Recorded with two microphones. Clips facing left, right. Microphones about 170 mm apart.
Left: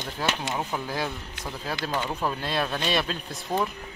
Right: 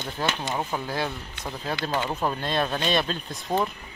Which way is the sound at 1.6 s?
5° left (ahead or behind).